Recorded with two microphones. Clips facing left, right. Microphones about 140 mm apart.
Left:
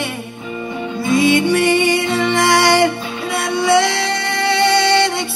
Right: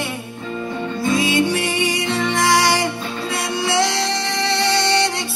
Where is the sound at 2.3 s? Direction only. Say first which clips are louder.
Left 4 dB; 60° left (ahead or behind).